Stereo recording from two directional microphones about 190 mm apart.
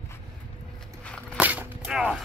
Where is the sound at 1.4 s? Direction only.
10° right (ahead or behind).